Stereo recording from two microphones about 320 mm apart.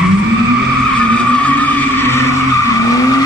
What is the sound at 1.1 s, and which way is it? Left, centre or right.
Vehicle, centre.